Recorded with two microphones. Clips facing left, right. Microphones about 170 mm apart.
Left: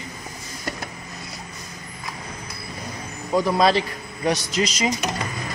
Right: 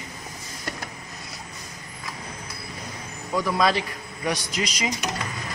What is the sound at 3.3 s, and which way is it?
A man's voice, 30° left (ahead or behind).